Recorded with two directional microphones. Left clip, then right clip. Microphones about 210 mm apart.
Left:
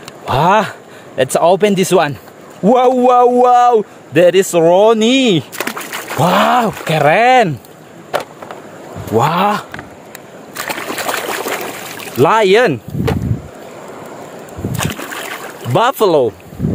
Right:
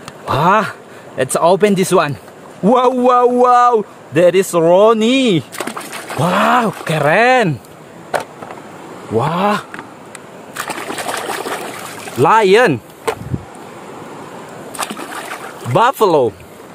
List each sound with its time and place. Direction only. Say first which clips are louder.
0.2 s a man's voice: left 1 dB; 5° left (ahead or behind)
5.7 s speech: left 3 dB; 15° left (ahead or behind)
9.1 s a man's voice: left 3 dB; centre (ahead or behind)
10.6 s trickle: left 2 dB; 15° left (ahead or behind)
12.2 s speech: even; 10° left (ahead or behind)
15.7 s speech: even; 10° left (ahead or behind)